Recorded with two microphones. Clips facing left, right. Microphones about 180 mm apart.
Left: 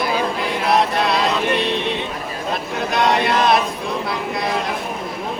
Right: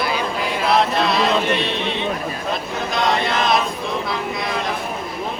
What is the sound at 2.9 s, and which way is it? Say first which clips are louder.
Chant: left 3 dB; 60° left (ahead or behind).